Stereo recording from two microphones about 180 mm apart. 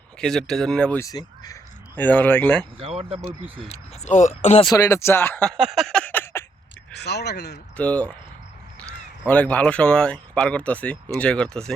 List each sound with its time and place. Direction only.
0.2 s speech: 5° left (ahead or behind)
2.7 s speech: 30° right (ahead or behind)
3.7 s speech: 40° left (ahead or behind)
4.6 s speech: 15° left (ahead or behind)
6.9 s speech: 65° left (ahead or behind)
7.8 s speech: 5° left (ahead or behind)